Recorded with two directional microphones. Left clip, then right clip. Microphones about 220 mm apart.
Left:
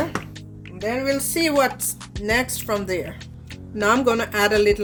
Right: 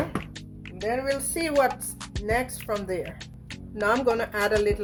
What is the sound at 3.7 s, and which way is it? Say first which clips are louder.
Speech: left 4 dB; 35° left (ahead or behind).